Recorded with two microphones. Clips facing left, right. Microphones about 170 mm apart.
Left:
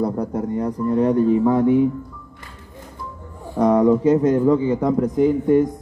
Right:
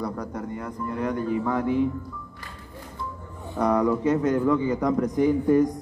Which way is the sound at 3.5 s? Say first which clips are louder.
Left 7 dB; 25° left (ahead or behind).